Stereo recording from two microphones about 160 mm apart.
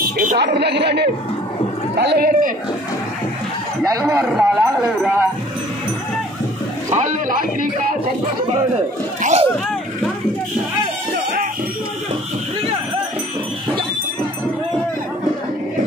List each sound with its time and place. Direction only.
0.4 s a man's voice: 90° right; by 2.5 s 70° right (ahead or behind)
4.3 s speech: 5° right (ahead or behind)
6.9 s a man's voice: 50° right (ahead or behind)
9.2 s a sound: 45° right (ahead or behind)